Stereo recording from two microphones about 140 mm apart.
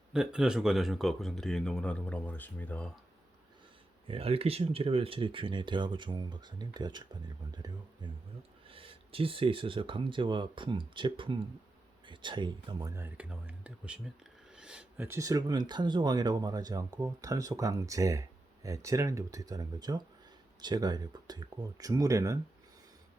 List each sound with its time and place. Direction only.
0.1 s speech: 5° right (ahead or behind); by 2.9 s 10° left (ahead or behind)
4.0 s speech: 45° right (ahead or behind)
12.9 s speech: 15° right (ahead or behind)
14.5 s a sound: 5° right (ahead or behind)
14.9 s speech: 15° right (ahead or behind)